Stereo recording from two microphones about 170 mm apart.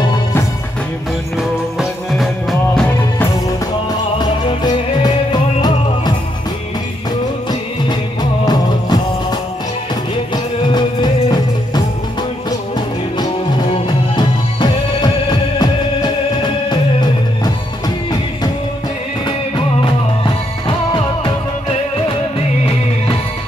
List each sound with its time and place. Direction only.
2.7 s music: 5° left (ahead or behind)
4.2 s music: 25° left (ahead or behind)
7.9 s music: 25° left (ahead or behind)
13.8 s music: 25° left (ahead or behind)
19.2 s music: 25° left (ahead or behind)